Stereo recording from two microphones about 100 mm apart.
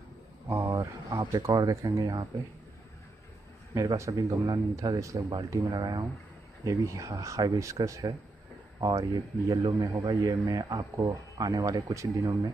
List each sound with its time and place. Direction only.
0.7 s speech: 40° right (ahead or behind)
3.7 s a man's voice: 30° right (ahead or behind)
6.6 s a man's voice: 35° right (ahead or behind)